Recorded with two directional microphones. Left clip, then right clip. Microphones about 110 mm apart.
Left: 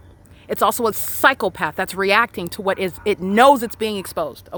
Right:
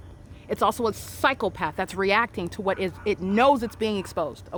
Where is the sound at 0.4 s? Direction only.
35° left (ahead or behind); by 3.6 s 55° left (ahead or behind).